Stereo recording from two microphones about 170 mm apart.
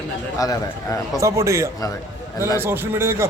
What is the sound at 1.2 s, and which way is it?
A man's voice, 15° right (ahead or behind).